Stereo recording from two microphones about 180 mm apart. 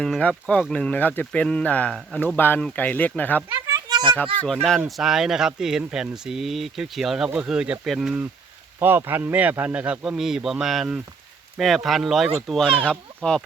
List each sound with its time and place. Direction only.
0.0 s speech: 5° left (ahead or behind)
3.5 s a sound: 20° right (ahead or behind)
4.9 s speech: centre (ahead or behind)
12.9 s speech: 5° left (ahead or behind)